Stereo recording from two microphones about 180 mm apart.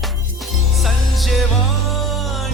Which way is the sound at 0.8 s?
Centre (ahead or behind).